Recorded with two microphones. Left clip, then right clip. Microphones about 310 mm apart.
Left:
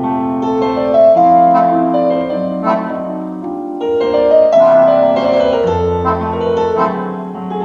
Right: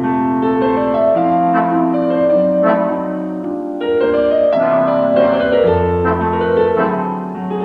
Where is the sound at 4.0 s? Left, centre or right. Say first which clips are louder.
Left 4 dB; left.